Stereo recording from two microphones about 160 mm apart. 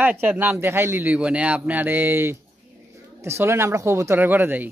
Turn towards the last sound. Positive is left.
turn(degrees=-10)  # may be behind; listen again after turning